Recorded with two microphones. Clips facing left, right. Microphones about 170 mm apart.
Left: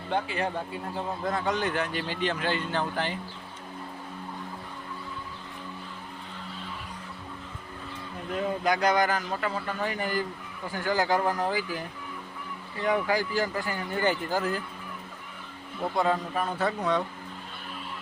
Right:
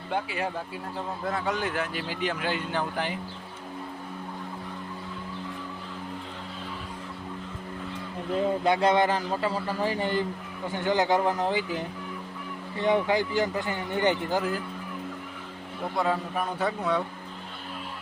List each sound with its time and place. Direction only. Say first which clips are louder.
0.1 s a man's voice: left 1 dB; 5° right (ahead or behind)
8.3 s a man's voice: right 3 dB; 25° right (ahead or behind)
16.0 s a man's voice: left 1 dB; 5° right (ahead or behind)